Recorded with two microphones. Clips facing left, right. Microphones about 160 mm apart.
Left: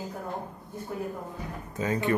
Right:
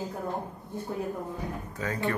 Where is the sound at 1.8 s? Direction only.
20° left (ahead or behind).